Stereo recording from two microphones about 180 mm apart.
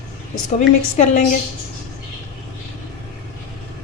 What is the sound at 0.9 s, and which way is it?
Speech, 40° left (ahead or behind).